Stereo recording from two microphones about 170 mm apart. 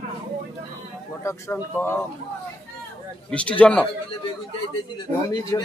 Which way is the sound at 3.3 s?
5° left (ahead or behind).